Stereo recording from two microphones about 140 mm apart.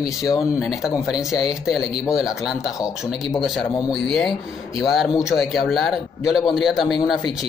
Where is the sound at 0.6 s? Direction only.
Centre (ahead or behind).